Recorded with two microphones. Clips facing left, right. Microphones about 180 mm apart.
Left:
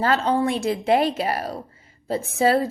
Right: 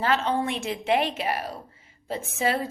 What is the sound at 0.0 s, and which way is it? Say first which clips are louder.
A woman's voice: left 4 dB; 40° left (ahead or behind).